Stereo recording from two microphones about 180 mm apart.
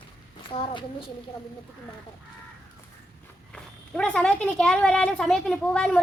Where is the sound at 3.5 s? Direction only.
5° left (ahead or behind).